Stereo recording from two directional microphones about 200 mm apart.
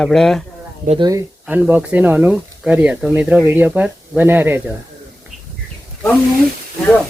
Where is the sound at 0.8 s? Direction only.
25° right (ahead or behind).